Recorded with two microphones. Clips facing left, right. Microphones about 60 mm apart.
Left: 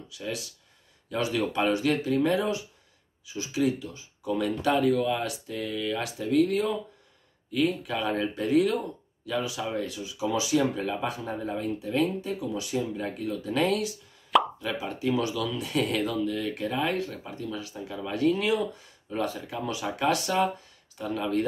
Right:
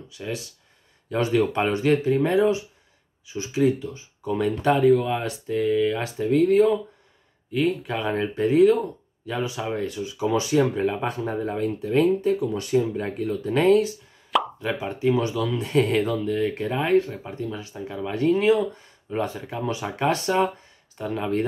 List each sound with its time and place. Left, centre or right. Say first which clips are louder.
0.1 s speech: right 3 dB; right
14.3 s plop: left 1 dB; centre
14.6 s speech: right 5 dB; right